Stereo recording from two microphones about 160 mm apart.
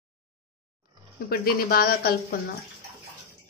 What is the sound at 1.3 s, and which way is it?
Speech, 70° left (ahead or behind).